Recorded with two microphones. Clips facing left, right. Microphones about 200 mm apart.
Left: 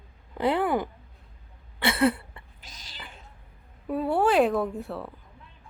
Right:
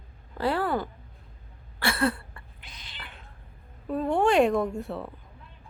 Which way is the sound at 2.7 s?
40° left (ahead or behind).